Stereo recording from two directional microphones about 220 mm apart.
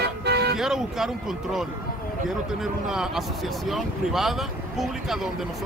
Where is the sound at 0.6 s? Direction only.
Centre (ahead or behind).